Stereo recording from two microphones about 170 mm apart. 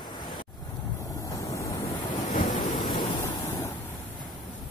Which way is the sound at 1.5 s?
20° left (ahead or behind).